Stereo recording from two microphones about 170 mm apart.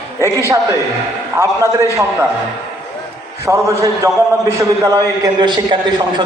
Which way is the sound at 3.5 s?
20° right (ahead or behind).